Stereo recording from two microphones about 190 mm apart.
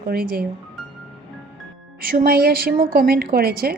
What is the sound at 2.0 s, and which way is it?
A woman's voice, 50° right (ahead or behind).